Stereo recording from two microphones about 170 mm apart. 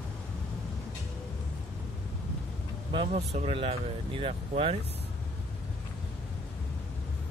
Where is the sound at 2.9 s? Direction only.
35° right (ahead or behind).